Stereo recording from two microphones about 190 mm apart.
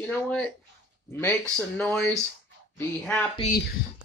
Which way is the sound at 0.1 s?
5° left (ahead or behind).